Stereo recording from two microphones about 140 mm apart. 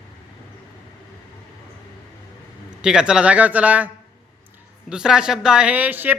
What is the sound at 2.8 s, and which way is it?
Speech, 5° right (ahead or behind).